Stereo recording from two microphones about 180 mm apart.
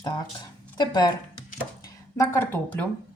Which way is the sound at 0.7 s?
25° left (ahead or behind).